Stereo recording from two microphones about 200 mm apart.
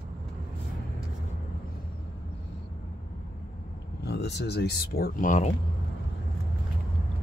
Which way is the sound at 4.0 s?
55° left (ahead or behind).